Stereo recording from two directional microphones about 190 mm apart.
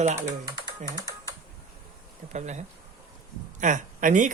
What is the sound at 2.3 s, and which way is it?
Speech, 40° right (ahead or behind).